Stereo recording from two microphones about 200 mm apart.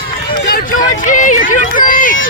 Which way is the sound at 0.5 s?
45° left (ahead or behind).